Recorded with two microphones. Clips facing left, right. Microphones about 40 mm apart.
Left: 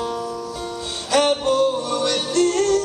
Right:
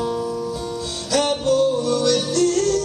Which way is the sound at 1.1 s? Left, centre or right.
Left.